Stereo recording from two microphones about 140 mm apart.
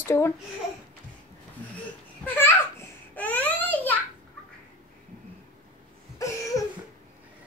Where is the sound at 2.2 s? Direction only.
15° left (ahead or behind).